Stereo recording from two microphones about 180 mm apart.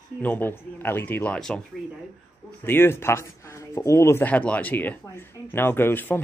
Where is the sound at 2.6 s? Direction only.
10° left (ahead or behind).